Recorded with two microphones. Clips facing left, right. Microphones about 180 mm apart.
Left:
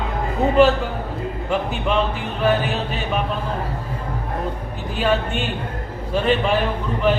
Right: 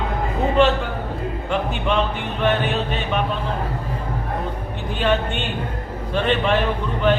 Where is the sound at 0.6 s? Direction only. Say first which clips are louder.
Left 3 dB; 5° left (ahead or behind).